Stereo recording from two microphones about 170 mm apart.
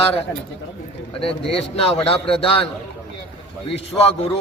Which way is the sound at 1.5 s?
35° left (ahead or behind).